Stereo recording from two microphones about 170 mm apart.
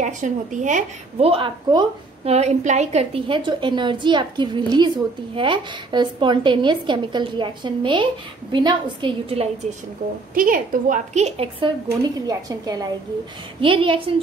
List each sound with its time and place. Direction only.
0.0 s a woman's voice: 45° right (ahead or behind)
1.3 s a woman's voice: 30° right (ahead or behind)
2.3 s a woman's voice: 40° right (ahead or behind)
10.3 s a woman's voice: 55° right (ahead or behind); by 11.7 s 35° right (ahead or behind)
12.3 s a woman's voice: 20° right (ahead or behind)